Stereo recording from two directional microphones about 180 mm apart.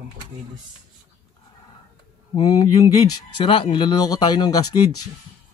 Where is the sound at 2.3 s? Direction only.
25° left (ahead or behind).